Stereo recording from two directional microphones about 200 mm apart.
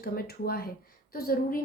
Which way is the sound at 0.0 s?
50° left (ahead or behind).